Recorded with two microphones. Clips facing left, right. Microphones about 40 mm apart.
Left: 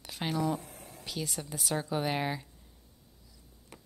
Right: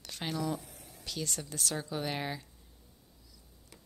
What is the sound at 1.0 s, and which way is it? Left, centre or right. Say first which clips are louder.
Speech: left 1 dB; centre.